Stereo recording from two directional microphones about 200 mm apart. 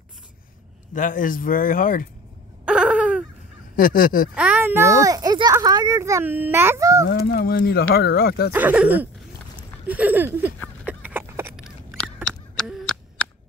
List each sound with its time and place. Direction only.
0.9 s speech: 40° left (ahead or behind)
2.6 s baby cry: 5° right (ahead or behind)
3.7 s speech: 45° left (ahead or behind)
4.4 s a child's voice: 10° right (ahead or behind)
7.1 s speech: 50° left (ahead or behind)
8.5 s a child's voice: 10° right (ahead or behind)
10.9 s a sound: 5° right (ahead or behind)
12.3 s a sound: centre (ahead or behind)